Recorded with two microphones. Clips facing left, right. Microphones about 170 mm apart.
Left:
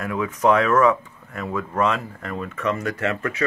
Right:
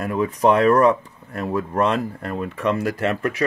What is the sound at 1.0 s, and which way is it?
Speech, 35° right (ahead or behind).